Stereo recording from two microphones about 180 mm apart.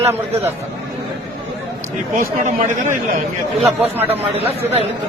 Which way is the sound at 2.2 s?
45° right (ahead or behind).